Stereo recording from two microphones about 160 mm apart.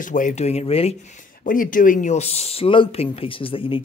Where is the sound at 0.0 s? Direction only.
55° left (ahead or behind).